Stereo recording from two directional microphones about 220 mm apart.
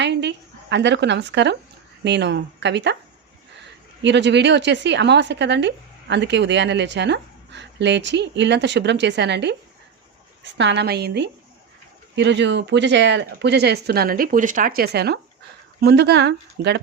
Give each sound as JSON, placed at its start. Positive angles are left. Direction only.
{"t": 0.0, "sound": "a woman's voice", "side_deg": -50}
{"t": 4.0, "sound": "a woman's voice", "side_deg": -50}